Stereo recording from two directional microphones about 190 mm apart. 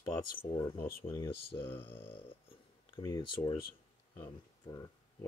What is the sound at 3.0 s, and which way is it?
Speech, 20° left (ahead or behind).